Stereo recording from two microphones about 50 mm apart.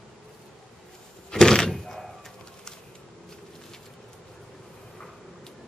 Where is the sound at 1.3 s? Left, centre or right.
Centre.